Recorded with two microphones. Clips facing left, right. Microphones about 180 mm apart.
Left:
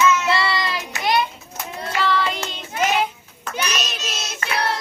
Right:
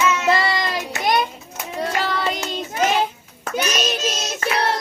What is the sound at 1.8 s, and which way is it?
Hands, 40° right (ahead or behind).